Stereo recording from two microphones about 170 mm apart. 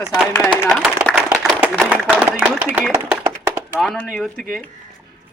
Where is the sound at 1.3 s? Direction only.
Centre (ahead or behind).